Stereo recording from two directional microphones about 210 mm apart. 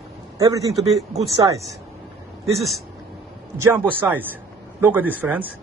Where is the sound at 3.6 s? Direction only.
10° right (ahead or behind).